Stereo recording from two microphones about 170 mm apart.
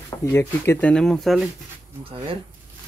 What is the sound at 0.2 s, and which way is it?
Speech, 15° left (ahead or behind).